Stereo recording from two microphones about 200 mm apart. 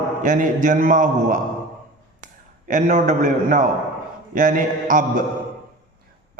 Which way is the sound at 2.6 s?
40° right (ahead or behind).